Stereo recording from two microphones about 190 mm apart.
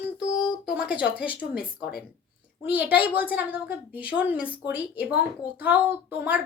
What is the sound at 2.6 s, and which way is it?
Speech, 10° right (ahead or behind).